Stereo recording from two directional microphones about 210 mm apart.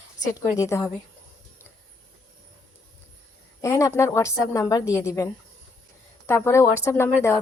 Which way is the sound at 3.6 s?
15° left (ahead or behind).